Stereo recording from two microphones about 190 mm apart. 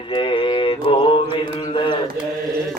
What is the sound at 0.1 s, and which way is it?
Mantra, 25° left (ahead or behind).